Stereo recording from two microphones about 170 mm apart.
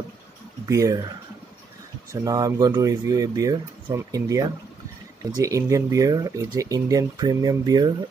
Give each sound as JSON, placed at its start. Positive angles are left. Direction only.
{"t": 0.7, "sound": "speech", "side_deg": -20}
{"t": 2.2, "sound": "speech", "side_deg": -20}